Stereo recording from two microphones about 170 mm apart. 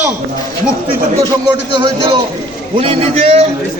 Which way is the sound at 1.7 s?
30° right (ahead or behind).